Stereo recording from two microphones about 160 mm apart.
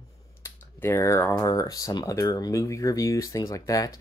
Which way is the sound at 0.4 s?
15° left (ahead or behind).